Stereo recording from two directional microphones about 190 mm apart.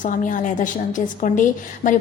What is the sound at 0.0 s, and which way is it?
A woman's voice, 45° left (ahead or behind).